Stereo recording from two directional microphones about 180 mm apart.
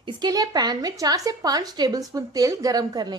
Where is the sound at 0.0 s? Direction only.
20° right (ahead or behind).